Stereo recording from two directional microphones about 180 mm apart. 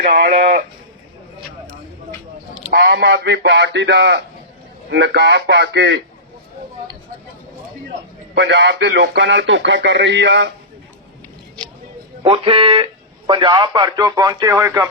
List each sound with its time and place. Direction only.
0.0 s speech: 55° right (ahead or behind)
2.7 s speech: 65° right (ahead or behind)
8.4 s speech: 80° right
12.2 s a man's voice: 30° right (ahead or behind); by 14.8 s 15° right (ahead or behind)